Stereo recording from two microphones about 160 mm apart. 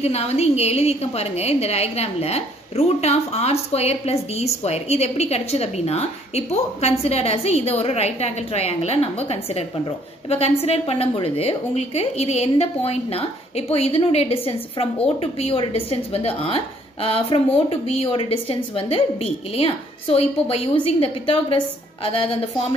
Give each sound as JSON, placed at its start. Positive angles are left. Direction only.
{"t": 0.0, "sound": "a woman's voice", "side_deg": 40}